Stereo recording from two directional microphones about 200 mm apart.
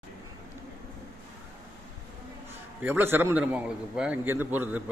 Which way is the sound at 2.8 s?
10° right (ahead or behind).